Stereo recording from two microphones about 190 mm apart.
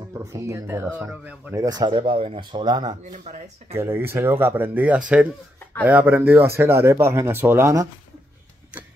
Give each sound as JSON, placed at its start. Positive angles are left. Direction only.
{"t": 0.1, "sound": "speech", "side_deg": -15}
{"t": 3.7, "sound": "speech", "side_deg": -10}